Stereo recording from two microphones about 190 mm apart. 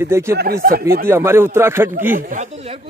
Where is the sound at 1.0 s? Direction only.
15° right (ahead or behind).